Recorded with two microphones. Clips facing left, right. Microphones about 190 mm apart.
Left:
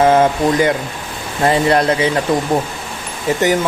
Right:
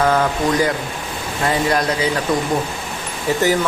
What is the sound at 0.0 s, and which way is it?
Speech, 25° left (ahead or behind).